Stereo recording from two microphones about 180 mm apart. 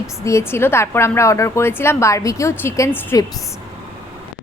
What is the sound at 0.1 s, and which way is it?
A woman's voice, 15° left (ahead or behind).